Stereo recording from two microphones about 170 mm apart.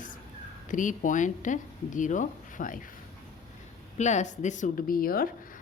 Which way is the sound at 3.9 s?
45° left (ahead or behind).